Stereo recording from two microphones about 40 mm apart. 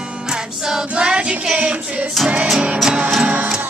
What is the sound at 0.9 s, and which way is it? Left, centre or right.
Music, right.